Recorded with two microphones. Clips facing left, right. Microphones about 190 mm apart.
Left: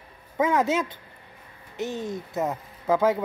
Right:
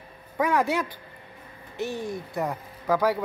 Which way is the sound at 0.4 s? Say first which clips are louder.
Left 1 dB; 20° left (ahead or behind).